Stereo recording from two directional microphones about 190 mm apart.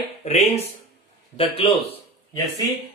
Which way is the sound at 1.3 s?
30° left (ahead or behind).